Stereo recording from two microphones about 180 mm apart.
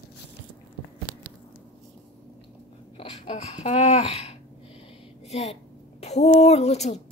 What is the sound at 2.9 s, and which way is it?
A woman's voice, 35° left (ahead or behind).